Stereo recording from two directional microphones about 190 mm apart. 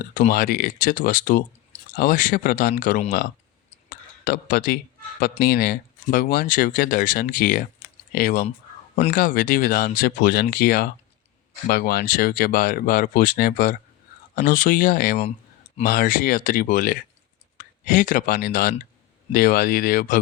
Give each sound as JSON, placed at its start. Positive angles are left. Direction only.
{"t": 0.1, "sound": "speech", "side_deg": 45}
{"t": 3.7, "sound": "clicking", "side_deg": 45}
{"t": 5.2, "sound": "speech", "side_deg": 50}